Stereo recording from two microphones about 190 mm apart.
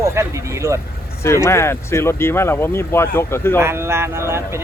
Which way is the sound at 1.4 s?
15° left (ahead or behind).